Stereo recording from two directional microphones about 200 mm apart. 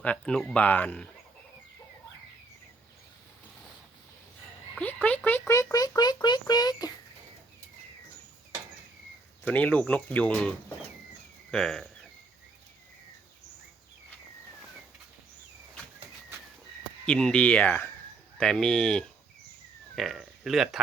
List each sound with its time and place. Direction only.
0.0 s speech: 5° left (ahead or behind)
4.7 s a sound: 5° left (ahead or behind)
5.0 s a child's voice: 10° left (ahead or behind)
9.4 s speech: 10° left (ahead or behind)
11.5 s speech: 5° left (ahead or behind)
17.1 s speech: 5° left (ahead or behind)